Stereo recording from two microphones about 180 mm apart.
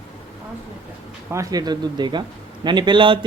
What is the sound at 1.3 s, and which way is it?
Speech, 20° right (ahead or behind).